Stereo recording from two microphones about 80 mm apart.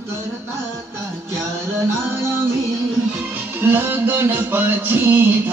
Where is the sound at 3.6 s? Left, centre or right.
Right.